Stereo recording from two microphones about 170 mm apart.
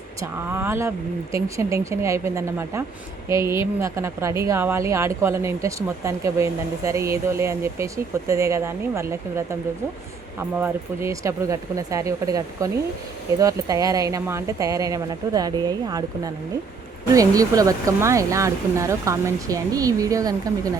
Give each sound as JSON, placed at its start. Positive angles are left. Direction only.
{"t": 0.2, "sound": "speech", "side_deg": -15}
{"t": 10.6, "sound": "speech", "side_deg": -15}